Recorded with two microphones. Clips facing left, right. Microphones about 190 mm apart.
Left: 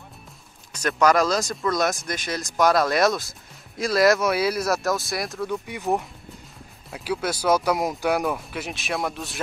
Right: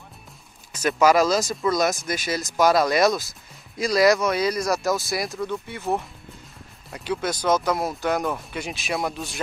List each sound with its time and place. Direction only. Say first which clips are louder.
0.7 s speech: right 2 dB; 5° right (ahead or behind)